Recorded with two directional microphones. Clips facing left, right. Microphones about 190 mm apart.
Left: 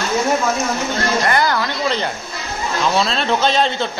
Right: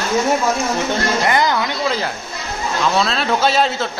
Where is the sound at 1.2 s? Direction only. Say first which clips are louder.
Right 1 dB; 15° right (ahead or behind).